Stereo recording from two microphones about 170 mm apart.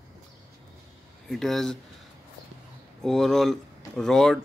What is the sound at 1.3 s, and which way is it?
Speech, centre (ahead or behind).